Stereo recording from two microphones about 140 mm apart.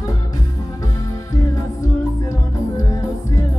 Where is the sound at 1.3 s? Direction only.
25° left (ahead or behind).